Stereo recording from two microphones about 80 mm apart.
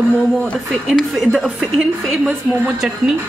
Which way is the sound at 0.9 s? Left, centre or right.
Centre.